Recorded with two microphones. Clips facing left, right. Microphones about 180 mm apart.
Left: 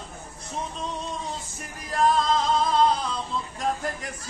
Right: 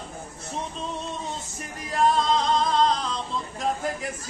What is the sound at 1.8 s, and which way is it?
Male singing, centre (ahead or behind).